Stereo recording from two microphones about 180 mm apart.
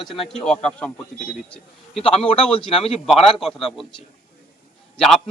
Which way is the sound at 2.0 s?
30° left (ahead or behind).